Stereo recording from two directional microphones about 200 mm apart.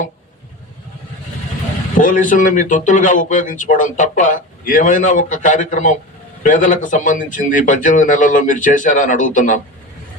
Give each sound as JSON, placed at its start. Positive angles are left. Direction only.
{"t": 2.0, "sound": "speech", "side_deg": 40}